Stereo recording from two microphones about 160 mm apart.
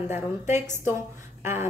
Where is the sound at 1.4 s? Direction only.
15° right (ahead or behind).